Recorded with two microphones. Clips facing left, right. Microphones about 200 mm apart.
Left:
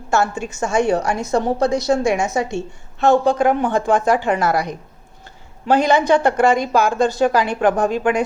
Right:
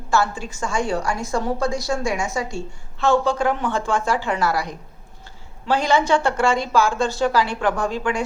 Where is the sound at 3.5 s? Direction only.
50° left (ahead or behind).